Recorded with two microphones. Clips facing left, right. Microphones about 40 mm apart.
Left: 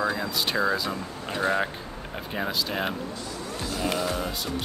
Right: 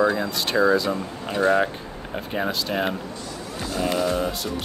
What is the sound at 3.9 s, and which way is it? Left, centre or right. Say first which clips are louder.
Speech: right 5 dB; centre.